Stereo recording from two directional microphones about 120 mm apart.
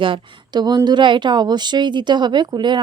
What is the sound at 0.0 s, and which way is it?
Speech, 40° right (ahead or behind).